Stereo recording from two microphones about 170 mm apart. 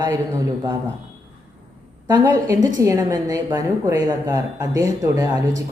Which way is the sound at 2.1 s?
20° right (ahead or behind).